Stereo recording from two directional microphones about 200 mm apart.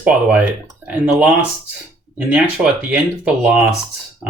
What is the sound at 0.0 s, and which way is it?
Speech, 5° right (ahead or behind).